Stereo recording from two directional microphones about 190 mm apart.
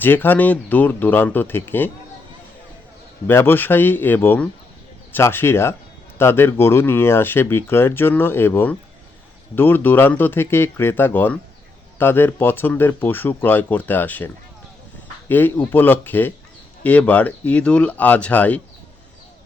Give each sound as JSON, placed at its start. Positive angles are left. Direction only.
{"t": 0.0, "sound": "speech", "side_deg": 10}
{"t": 3.2, "sound": "speech", "side_deg": 10}
{"t": 15.3, "sound": "speech", "side_deg": 10}